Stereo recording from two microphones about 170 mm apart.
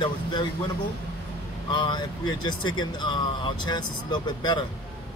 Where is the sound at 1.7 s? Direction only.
25° left (ahead or behind).